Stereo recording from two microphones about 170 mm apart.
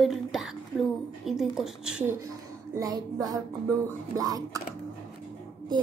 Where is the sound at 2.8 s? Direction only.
20° right (ahead or behind).